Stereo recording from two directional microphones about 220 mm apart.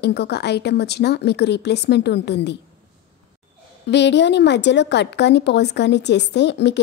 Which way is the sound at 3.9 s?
50° left (ahead or behind).